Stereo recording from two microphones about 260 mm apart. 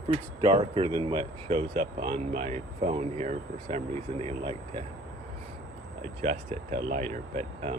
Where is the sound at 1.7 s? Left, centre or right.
Right.